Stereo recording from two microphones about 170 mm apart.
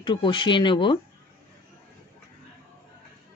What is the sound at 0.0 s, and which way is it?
Speech, 25° left (ahead or behind).